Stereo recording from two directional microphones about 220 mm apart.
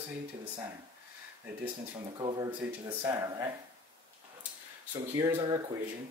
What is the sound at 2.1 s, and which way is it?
Speech, 20° right (ahead or behind).